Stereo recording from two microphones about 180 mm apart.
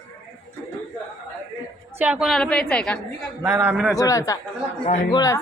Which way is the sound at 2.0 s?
5° right (ahead or behind).